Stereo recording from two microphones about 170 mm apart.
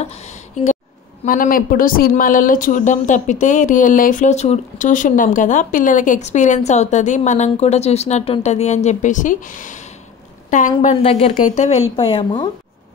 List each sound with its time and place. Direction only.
0.0 s a sound: 40° left (ahead or behind)
1.2 s a woman's voice: 50° left (ahead or behind)
10.8 s speech: 35° left (ahead or behind)
11.3 s speech: 45° left (ahead or behind); by 12.4 s 30° left (ahead or behind)